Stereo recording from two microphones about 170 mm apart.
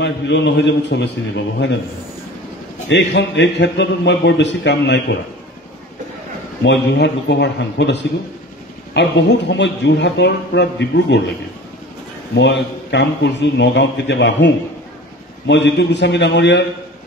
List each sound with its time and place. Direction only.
0.0 s a man's voice: 90° left
2.9 s a man's voice: 90° left
6.6 s a man's voice: 90° left
12.4 s a man's voice: 90° left